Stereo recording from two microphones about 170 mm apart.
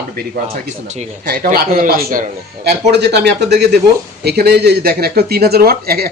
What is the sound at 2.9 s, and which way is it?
Speech, 80° right.